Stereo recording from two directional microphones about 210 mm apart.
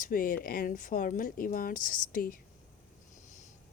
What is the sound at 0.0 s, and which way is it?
A woman's voice, 40° left (ahead or behind).